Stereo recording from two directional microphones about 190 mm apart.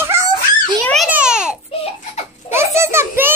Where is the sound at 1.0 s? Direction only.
5° right (ahead or behind).